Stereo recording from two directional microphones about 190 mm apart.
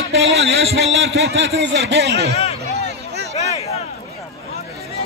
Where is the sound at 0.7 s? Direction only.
75° right (ahead or behind).